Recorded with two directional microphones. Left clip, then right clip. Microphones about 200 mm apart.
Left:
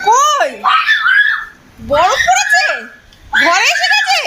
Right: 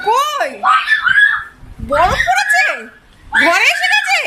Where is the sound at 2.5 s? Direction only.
20° right (ahead or behind).